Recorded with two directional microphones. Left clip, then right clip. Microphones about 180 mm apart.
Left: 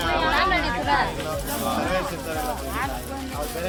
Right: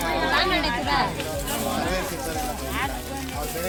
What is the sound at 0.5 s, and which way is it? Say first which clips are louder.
Speech: left 1 dB; 70° right (ahead or behind).